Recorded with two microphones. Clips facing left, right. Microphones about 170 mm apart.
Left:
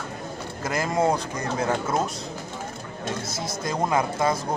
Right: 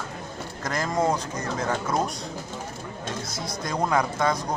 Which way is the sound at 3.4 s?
Centre (ahead or behind).